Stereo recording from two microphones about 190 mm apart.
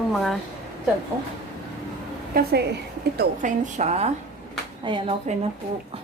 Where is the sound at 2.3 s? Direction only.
55° right (ahead or behind).